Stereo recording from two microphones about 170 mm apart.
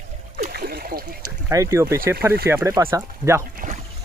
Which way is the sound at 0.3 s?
60° right (ahead or behind).